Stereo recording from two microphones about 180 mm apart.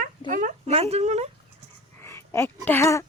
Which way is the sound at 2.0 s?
15° left (ahead or behind).